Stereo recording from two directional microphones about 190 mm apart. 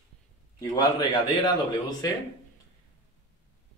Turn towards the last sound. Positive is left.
turn(degrees=20)  # may be behind; listen again after turning